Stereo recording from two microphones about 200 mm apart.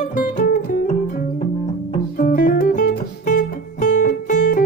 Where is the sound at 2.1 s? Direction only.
45° left (ahead or behind).